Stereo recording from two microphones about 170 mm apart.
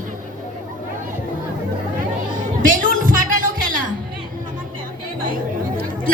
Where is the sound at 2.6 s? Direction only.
55° right (ahead or behind).